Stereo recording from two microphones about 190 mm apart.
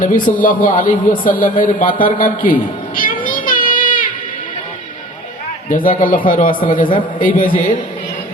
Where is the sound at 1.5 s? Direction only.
45° left (ahead or behind).